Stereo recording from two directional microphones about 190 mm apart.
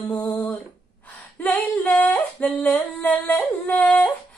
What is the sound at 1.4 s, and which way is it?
Singing, 5° left (ahead or behind).